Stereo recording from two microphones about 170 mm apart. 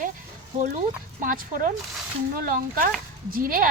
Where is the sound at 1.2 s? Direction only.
55° right (ahead or behind).